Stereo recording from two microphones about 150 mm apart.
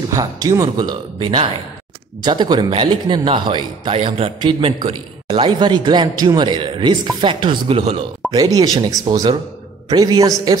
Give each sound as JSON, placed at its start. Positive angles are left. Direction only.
{"t": 0.1, "sound": "a man's voice", "side_deg": -20}
{"t": 8.3, "sound": "speech", "side_deg": -25}